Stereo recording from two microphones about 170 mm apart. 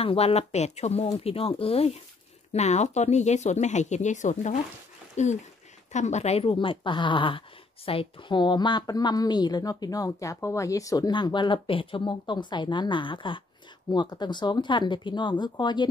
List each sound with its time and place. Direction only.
0.0 s speech: 35° left (ahead or behind)